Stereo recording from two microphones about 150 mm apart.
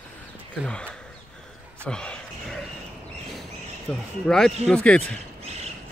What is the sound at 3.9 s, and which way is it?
A man's voice, 5° left (ahead or behind).